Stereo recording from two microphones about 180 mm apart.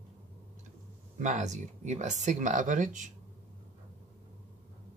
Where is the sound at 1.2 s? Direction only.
40° right (ahead or behind).